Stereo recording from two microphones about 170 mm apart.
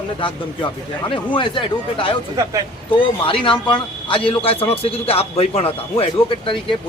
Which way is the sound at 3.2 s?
30° left (ahead or behind).